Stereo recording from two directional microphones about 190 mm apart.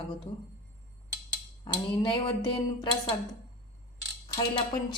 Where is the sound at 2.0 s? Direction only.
25° left (ahead or behind).